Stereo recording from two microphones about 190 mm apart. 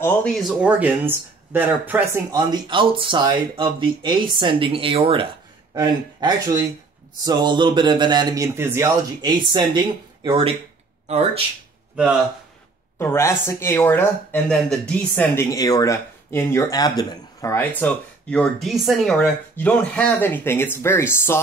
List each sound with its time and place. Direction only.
0.0 s speech: 10° left (ahead or behind)
0.4 s speech: 5° right (ahead or behind)
2.3 s speech: 25° right (ahead or behind)
13.0 s speech: 10° left (ahead or behind)